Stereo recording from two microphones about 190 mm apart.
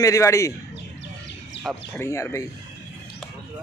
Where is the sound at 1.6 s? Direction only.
70° left (ahead or behind).